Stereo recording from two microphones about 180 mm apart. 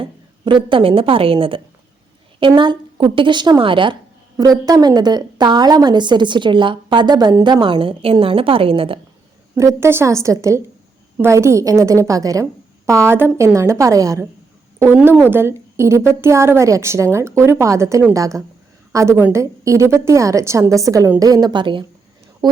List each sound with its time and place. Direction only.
0.0 s a woman's voice: 30° right (ahead or behind)
9.6 s a woman's voice: 15° right (ahead or behind)